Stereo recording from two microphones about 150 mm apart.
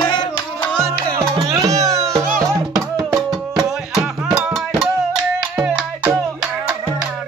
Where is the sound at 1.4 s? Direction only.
20° right (ahead or behind).